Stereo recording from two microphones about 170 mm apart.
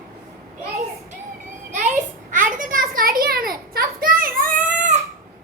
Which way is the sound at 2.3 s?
50° right (ahead or behind).